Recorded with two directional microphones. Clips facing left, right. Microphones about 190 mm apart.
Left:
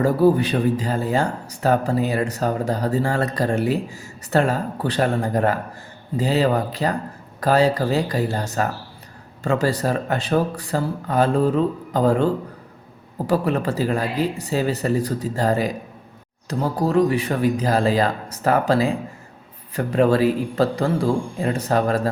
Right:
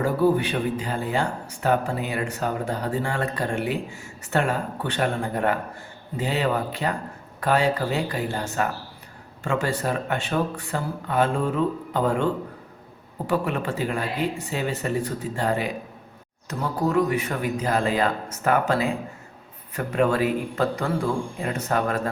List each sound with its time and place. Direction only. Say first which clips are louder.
0.0 s speech: left 4 dB; 40° left (ahead or behind)